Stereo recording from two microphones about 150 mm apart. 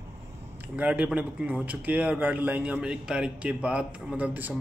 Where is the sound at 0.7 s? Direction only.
10° right (ahead or behind).